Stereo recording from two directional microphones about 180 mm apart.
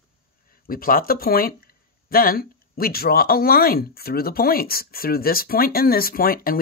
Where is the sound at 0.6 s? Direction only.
55° left (ahead or behind).